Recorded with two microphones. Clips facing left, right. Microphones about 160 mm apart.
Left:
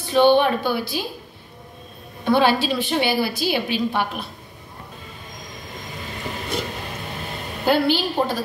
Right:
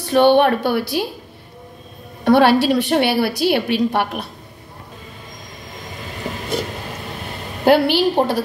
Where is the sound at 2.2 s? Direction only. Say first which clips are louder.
Right 5 dB; 70° right (ahead or behind).